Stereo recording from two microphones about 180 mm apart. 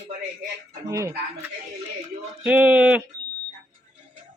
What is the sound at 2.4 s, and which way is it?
Speech, 10° right (ahead or behind).